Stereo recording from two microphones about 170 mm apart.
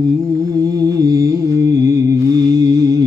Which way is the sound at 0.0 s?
20° right (ahead or behind).